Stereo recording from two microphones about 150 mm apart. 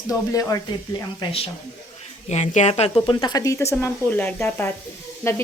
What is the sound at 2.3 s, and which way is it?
Speech, 50° left (ahead or behind).